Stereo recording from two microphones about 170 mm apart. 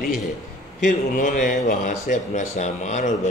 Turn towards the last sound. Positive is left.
turn(degrees=45)  # may be behind; listen again after turning